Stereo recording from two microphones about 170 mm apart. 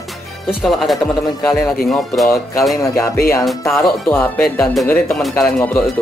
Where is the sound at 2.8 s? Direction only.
20° left (ahead or behind).